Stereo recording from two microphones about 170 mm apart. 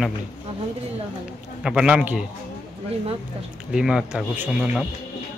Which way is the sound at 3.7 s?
5° right (ahead or behind).